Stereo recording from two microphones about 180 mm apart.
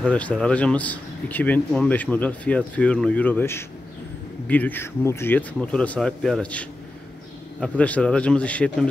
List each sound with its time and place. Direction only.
0.0 s speech: 5° left (ahead or behind)